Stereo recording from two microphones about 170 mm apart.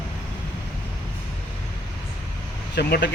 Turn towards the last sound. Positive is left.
turn(degrees=75)  # may be behind; listen again after turning